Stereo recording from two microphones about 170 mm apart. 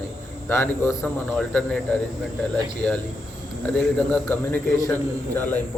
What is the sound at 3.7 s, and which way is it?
A man's voice, 10° left (ahead or behind).